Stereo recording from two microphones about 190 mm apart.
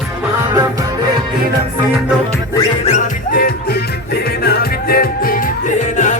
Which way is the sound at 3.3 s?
55° left (ahead or behind).